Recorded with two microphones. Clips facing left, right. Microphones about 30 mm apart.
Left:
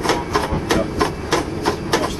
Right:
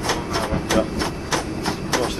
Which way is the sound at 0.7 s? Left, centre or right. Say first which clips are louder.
Left 3 dB; left.